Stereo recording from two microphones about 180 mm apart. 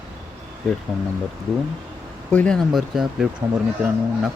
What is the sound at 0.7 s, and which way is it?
Speech, centre (ahead or behind).